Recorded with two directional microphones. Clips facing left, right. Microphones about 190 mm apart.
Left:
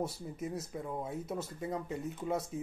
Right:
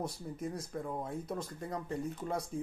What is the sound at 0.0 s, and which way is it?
Speech, 5° left (ahead or behind).